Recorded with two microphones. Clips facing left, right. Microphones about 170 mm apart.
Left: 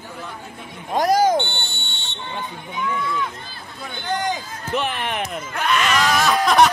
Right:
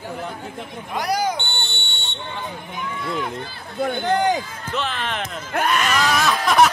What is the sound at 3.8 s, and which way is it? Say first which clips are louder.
Speech: right 6 dB; 55° right (ahead or behind).